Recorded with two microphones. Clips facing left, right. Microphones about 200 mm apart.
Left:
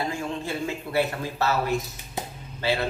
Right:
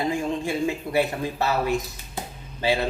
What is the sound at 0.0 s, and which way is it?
A man's voice, 15° right (ahead or behind).